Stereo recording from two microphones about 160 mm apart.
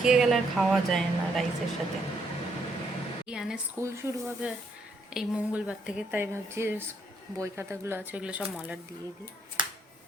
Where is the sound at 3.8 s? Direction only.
15° right (ahead or behind).